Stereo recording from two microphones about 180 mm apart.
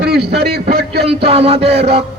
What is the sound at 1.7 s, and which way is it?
Speech, 65° right (ahead or behind).